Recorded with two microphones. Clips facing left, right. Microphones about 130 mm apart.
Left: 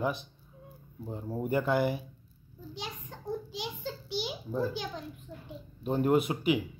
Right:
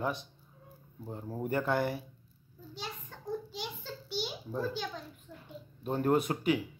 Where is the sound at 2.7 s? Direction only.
15° left (ahead or behind).